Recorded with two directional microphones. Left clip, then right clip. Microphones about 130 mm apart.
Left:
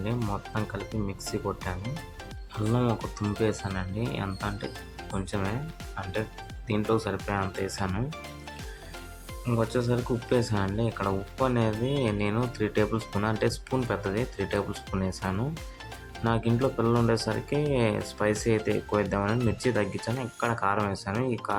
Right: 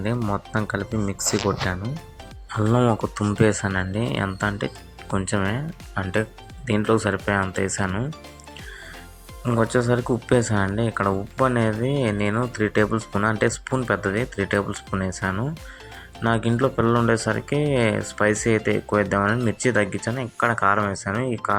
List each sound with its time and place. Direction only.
0.0 s speech: 45° right (ahead or behind)
3.2 s speech: 45° right (ahead or behind)
9.5 s speech: 35° right (ahead or behind); by 21.2 s 15° right (ahead or behind)